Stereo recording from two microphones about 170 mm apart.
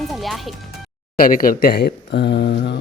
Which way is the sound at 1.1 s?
55° left (ahead or behind).